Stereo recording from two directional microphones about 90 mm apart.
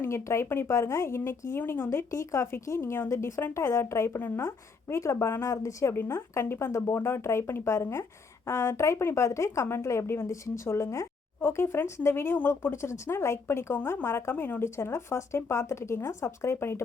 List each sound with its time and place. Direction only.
0.0 s speech: 30° left (ahead or behind)